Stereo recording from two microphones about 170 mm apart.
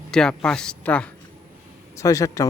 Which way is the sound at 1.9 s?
20° left (ahead or behind).